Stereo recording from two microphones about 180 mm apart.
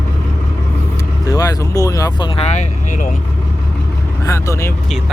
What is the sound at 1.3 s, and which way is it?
Speech, 20° left (ahead or behind).